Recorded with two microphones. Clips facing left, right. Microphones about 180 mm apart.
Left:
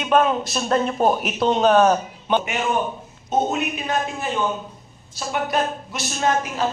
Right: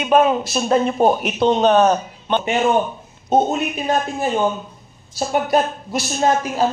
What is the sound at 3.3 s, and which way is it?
A woman's voice, 35° right (ahead or behind).